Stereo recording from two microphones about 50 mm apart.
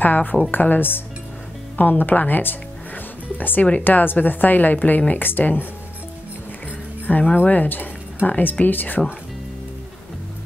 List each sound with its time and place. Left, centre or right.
0.0 s a woman's voice: left
7.3 s a woman's voice: left